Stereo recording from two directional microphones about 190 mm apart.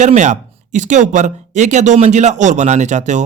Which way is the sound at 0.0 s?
40° right (ahead or behind).